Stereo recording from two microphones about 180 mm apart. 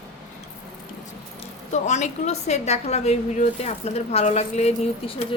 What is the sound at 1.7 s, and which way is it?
A woman's voice, 40° left (ahead or behind).